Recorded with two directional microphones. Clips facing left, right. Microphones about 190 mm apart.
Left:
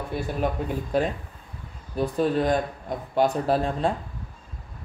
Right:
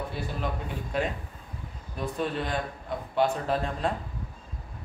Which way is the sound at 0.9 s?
35° left (ahead or behind).